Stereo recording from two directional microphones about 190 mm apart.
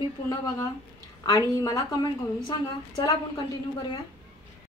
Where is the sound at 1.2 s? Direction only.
20° left (ahead or behind).